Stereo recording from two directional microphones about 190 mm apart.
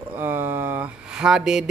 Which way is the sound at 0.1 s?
10° right (ahead or behind).